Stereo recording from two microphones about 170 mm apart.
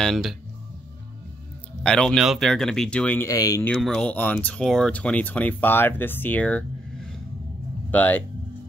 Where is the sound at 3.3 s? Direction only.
20° left (ahead or behind).